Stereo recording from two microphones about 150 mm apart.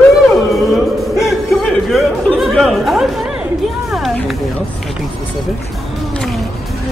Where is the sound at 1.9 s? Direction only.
Centre (ahead or behind).